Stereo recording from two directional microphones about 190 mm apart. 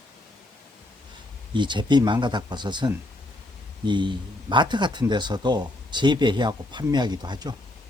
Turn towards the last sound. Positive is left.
turn(degrees=-20)  # may be behind; listen again after turning